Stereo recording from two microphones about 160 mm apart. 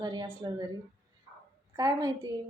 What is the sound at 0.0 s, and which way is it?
Speech, 30° right (ahead or behind).